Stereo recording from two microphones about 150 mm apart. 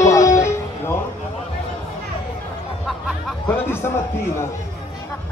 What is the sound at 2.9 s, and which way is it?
Music, centre (ahead or behind).